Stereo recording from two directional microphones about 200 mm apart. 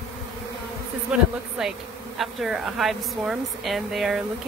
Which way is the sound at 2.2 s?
Centre (ahead or behind).